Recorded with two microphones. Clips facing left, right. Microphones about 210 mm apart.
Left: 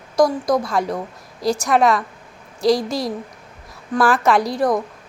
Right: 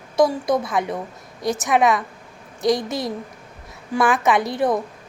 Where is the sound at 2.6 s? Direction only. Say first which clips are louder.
Left 3 dB; 20° right (ahead or behind).